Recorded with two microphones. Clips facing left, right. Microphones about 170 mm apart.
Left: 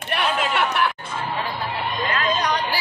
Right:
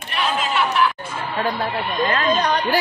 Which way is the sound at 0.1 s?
60° left (ahead or behind).